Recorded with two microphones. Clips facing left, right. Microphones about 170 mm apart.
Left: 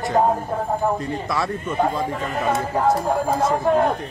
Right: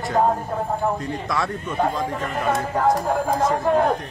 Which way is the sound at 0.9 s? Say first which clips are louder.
Left 1 dB; centre (ahead or behind).